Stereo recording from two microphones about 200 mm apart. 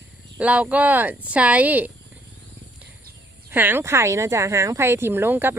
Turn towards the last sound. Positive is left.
turn(degrees=-10)  # may be behind; listen again after turning